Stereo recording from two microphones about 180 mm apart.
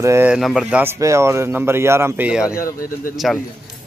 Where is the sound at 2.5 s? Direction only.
50° left (ahead or behind).